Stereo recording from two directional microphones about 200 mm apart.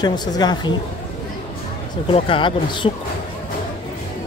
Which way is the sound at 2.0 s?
25° left (ahead or behind).